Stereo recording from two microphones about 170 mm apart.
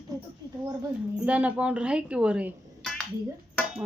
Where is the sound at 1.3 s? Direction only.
10° right (ahead or behind).